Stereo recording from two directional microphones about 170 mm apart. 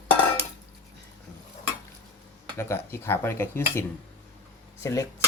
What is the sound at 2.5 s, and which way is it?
Speech, 15° left (ahead or behind).